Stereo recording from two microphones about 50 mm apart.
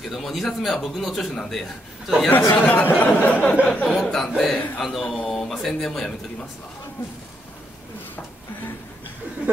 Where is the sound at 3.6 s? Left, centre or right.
Left.